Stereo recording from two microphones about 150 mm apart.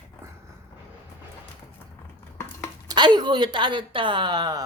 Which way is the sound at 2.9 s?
30° right (ahead or behind).